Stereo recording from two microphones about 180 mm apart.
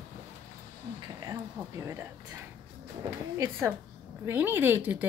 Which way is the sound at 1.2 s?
15° right (ahead or behind).